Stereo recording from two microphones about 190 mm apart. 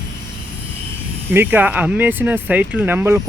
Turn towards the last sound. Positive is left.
turn(degrees=-15)  # may be behind; listen again after turning